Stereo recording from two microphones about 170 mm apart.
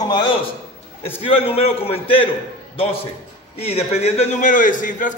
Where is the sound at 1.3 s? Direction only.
35° left (ahead or behind).